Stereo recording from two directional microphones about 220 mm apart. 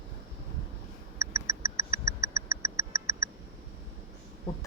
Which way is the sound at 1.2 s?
15° right (ahead or behind).